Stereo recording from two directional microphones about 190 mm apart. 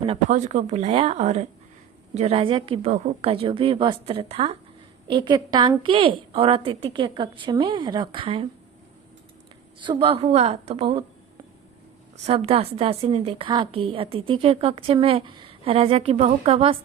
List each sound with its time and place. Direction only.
0.0 s a woman's voice: 30° right (ahead or behind)
9.8 s a woman's voice: 30° right (ahead or behind)
12.2 s a woman's voice: 30° right (ahead or behind)